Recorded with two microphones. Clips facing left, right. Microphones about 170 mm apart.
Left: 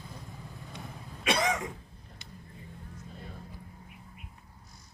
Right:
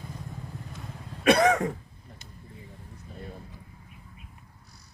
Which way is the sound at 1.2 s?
60° right (ahead or behind).